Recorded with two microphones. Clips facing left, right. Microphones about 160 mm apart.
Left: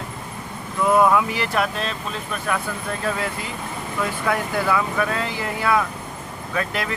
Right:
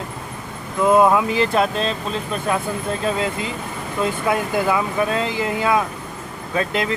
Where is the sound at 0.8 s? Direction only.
25° right (ahead or behind).